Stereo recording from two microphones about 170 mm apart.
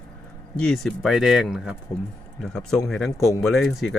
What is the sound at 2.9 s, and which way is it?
Speech, centre (ahead or behind).